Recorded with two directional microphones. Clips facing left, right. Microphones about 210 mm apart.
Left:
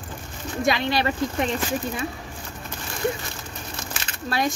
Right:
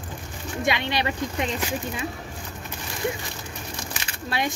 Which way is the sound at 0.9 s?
20° right (ahead or behind).